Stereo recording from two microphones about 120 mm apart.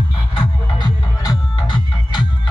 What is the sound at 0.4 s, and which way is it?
Music, 35° left (ahead or behind).